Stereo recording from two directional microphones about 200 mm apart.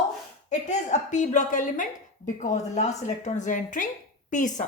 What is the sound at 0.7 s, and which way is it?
A woman's voice, 35° left (ahead or behind).